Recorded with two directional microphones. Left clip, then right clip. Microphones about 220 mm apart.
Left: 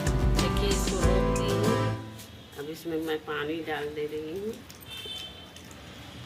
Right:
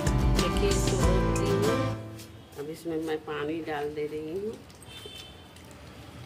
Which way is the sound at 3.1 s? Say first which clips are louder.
Left 1 dB; 20° right (ahead or behind).